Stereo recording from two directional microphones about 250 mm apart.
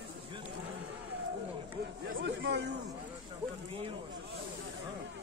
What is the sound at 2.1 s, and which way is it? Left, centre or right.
Speech, right.